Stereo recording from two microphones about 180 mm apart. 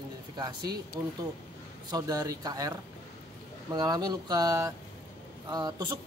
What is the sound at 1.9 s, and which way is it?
Speech, 20° right (ahead or behind).